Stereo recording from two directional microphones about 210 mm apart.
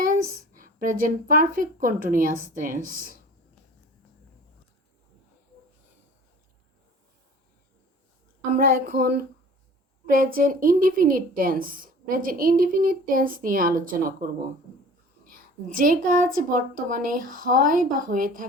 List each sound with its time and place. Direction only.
0.0 s speech: 40° right (ahead or behind)
8.5 s a woman's voice: 45° right (ahead or behind)
15.3 s a woman's voice: 40° right (ahead or behind)